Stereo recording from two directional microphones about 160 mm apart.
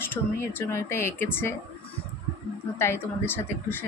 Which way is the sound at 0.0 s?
15° left (ahead or behind).